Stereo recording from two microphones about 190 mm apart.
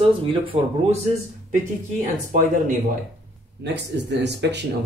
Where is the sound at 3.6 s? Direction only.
65° right (ahead or behind).